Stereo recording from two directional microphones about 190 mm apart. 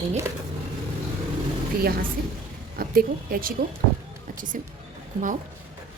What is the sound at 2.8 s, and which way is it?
Speech, 50° right (ahead or behind).